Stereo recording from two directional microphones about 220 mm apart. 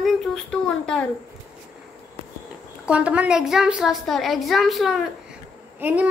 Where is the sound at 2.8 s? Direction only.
5° right (ahead or behind).